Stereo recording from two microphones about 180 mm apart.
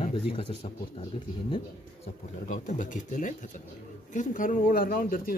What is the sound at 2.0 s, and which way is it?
Speech, 45° left (ahead or behind).